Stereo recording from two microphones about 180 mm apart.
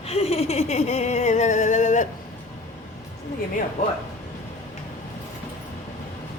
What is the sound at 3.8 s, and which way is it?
Speech, 40° left (ahead or behind).